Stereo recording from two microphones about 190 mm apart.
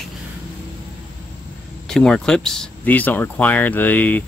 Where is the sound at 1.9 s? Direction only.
5° left (ahead or behind).